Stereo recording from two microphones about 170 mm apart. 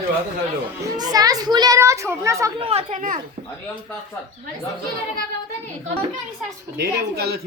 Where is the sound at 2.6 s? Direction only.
35° right (ahead or behind).